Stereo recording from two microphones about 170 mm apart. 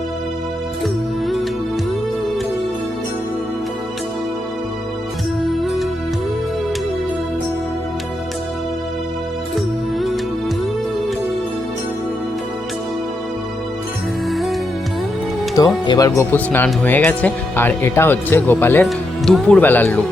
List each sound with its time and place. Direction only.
5.5 s music: centre (ahead or behind)
9.6 s music: centre (ahead or behind)
14.3 s music: centre (ahead or behind)
15.5 s speech: 20° left (ahead or behind)
18.9 s speech: centre (ahead or behind)